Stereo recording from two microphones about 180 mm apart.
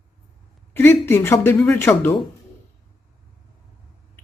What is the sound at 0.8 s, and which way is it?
Speech, 10° left (ahead or behind).